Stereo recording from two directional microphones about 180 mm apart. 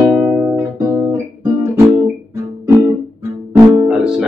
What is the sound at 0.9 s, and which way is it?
Guitar, 10° right (ahead or behind).